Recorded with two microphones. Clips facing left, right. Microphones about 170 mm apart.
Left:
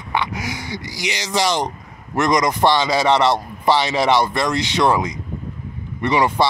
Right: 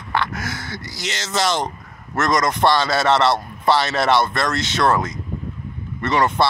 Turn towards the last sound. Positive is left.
turn(degrees=10)  # may be behind; listen again after turning